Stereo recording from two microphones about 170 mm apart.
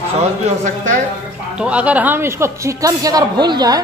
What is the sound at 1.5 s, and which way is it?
A man's voice, 5° right (ahead or behind).